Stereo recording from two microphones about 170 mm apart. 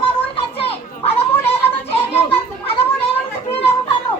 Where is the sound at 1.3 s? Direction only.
10° left (ahead or behind).